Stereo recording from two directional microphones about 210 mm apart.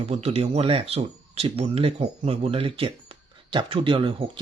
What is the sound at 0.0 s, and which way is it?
Speech, 30° right (ahead or behind).